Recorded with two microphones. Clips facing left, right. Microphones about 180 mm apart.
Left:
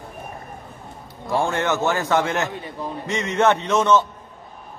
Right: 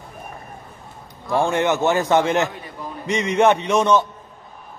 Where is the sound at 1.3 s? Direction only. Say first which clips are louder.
Right 3 dB; 20° right (ahead or behind).